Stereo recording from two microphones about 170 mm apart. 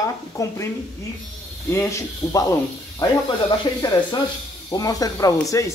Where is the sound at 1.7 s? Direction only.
15° left (ahead or behind).